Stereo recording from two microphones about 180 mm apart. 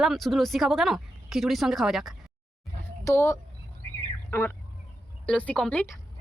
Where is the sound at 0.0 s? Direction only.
Centre (ahead or behind).